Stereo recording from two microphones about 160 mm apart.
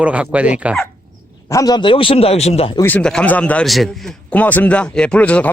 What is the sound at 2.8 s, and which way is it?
A man's voice, 10° left (ahead or behind).